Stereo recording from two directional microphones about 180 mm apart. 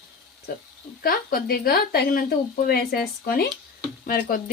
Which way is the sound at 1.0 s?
55° left (ahead or behind).